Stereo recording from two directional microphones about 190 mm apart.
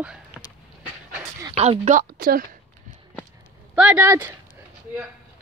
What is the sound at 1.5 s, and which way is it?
Speech, 35° right (ahead or behind).